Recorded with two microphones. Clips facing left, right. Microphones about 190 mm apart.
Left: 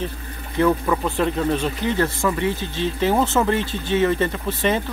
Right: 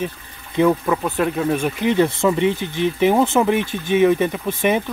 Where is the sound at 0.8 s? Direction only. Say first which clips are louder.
Right 1 dB; 5° right (ahead or behind).